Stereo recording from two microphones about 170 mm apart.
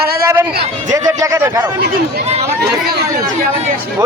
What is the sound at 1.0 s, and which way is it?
Speech, 20° right (ahead or behind).